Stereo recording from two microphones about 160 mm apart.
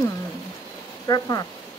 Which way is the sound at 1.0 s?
25° left (ahead or behind).